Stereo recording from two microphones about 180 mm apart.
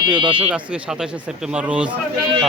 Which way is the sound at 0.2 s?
30° right (ahead or behind).